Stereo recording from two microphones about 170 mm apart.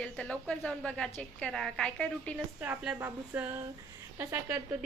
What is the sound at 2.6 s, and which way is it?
Speech, 10° right (ahead or behind).